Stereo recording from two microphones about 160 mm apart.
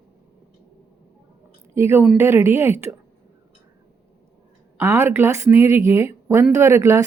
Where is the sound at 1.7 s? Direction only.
15° right (ahead or behind).